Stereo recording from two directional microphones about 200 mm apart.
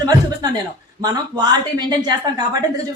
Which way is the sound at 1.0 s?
20° right (ahead or behind).